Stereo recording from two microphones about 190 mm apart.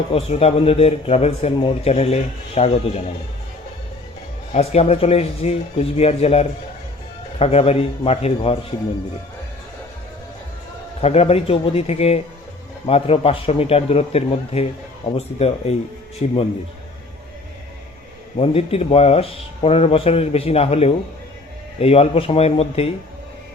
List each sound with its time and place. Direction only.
0.1 s speech: 30° left (ahead or behind)
4.5 s speech: 35° left (ahead or behind)
11.0 s speech: 35° left (ahead or behind)
18.3 s speech: 30° left (ahead or behind)